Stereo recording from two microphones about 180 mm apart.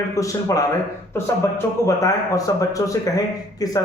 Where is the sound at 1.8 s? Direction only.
20° left (ahead or behind).